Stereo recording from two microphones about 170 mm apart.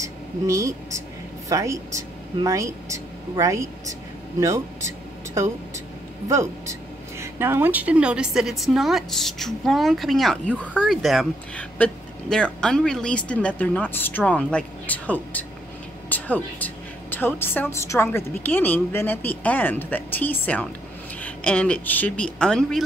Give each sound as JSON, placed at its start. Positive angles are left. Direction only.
{"t": 0.0, "sound": "a woman's voice", "side_deg": -20}
{"t": 16.1, "sound": "a sound", "side_deg": 10}
{"t": 17.4, "sound": "speech", "side_deg": 15}